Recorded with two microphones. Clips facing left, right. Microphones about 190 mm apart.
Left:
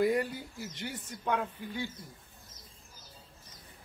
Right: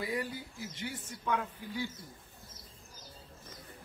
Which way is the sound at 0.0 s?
50° left (ahead or behind).